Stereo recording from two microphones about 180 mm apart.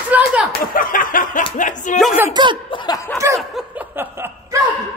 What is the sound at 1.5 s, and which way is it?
Speech, 45° left (ahead or behind).